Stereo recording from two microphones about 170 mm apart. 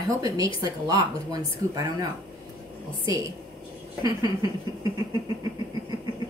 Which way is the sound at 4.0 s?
20° right (ahead or behind).